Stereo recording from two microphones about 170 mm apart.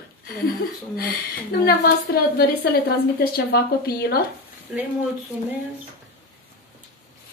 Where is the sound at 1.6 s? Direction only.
65° left (ahead or behind).